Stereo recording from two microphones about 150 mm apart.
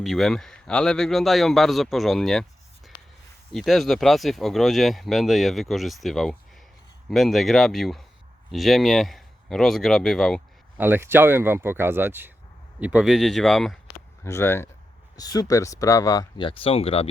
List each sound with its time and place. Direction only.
0.0 s speech: centre (ahead or behind)
10.8 s speech: 15° right (ahead or behind)
14.3 s speech: 15° left (ahead or behind)
16.5 s speech: 35° left (ahead or behind)